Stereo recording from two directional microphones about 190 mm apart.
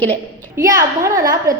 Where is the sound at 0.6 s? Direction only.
15° right (ahead or behind).